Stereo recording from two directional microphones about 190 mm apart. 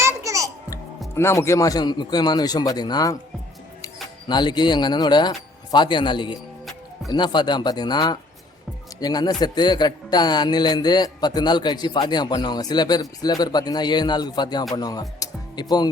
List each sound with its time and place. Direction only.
0.0 s music: 15° right (ahead or behind)
1.1 s a man's voice: 15° left (ahead or behind)
4.3 s a man's voice: 25° left (ahead or behind)